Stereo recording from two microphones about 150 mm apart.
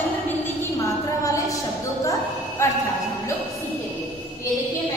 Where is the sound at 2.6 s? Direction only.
20° left (ahead or behind).